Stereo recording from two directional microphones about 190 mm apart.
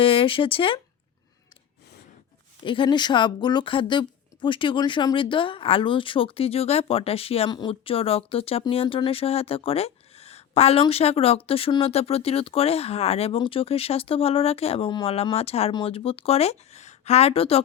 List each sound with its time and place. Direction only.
0.0 s speech: 30° left (ahead or behind)
2.6 s speech: 25° left (ahead or behind)